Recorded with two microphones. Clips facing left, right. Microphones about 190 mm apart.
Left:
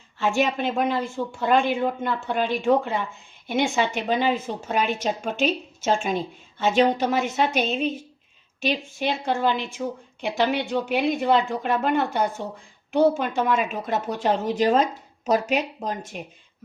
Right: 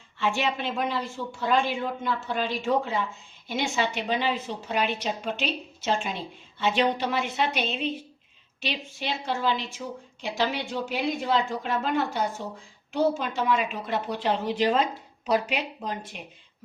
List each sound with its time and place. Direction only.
0.2 s a woman's voice: 45° left (ahead or behind)